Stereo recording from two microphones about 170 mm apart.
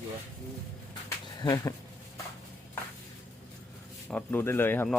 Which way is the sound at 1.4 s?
20° left (ahead or behind).